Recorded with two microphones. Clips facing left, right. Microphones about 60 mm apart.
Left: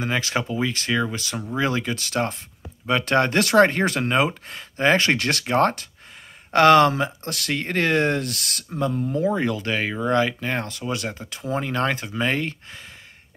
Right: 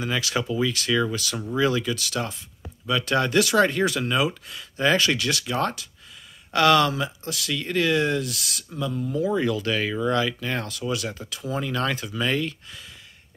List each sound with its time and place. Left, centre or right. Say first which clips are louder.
0.0 s speech: left 2 dB; left